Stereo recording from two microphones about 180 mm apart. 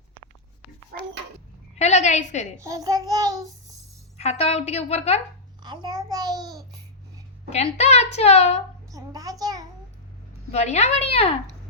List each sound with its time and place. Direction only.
0.9 s speech: 55° right (ahead or behind)
1.8 s a woman's voice: 40° left (ahead or behind)
2.6 s child singing: 20° right (ahead or behind)
4.2 s a woman's voice: 35° left (ahead or behind)
5.6 s child singing: 25° right (ahead or behind)
7.5 s a woman's voice: 35° left (ahead or behind)
8.9 s a sound: 20° right (ahead or behind)
10.5 s a woman's voice: 40° left (ahead or behind)